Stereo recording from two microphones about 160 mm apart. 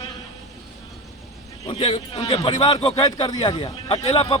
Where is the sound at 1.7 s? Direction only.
35° left (ahead or behind).